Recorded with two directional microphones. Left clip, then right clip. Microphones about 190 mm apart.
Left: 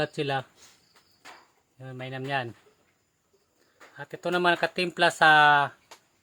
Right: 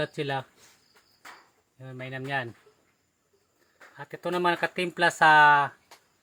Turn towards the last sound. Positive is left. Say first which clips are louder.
# right 1 dB
turn(degrees=15)  # may be behind; listen again after turning